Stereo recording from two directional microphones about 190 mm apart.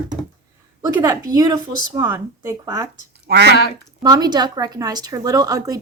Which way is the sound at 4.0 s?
20° right (ahead or behind).